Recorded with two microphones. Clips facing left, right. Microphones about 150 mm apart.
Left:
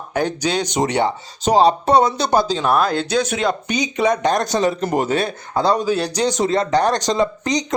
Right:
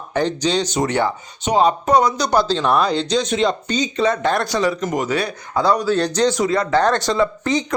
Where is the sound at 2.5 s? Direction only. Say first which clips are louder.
Even; 5° left (ahead or behind); by 5.9 s 25° left (ahead or behind).